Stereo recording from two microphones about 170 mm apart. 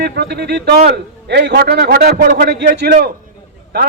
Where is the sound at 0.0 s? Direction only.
75° right (ahead or behind).